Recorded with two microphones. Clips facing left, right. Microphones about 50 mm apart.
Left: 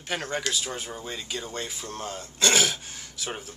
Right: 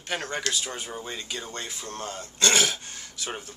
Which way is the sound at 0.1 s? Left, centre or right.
Centre.